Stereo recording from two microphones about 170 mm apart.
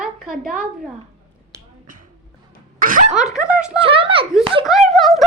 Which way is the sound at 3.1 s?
5° right (ahead or behind).